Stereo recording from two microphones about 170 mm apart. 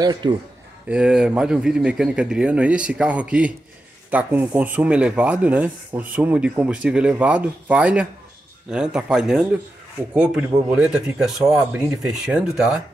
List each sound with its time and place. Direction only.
0.0 s a man's voice: 25° right (ahead or behind)
0.8 s speech: 5° right (ahead or behind)